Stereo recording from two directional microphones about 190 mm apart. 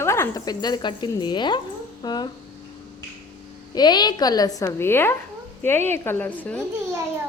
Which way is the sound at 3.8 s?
20° left (ahead or behind).